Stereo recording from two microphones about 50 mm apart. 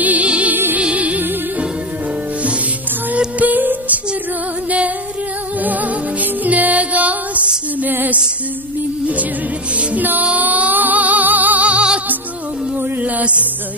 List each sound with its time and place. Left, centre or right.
0.0 s music: right
3.3 s music: right
9.8 s music: right
13.0 s music: right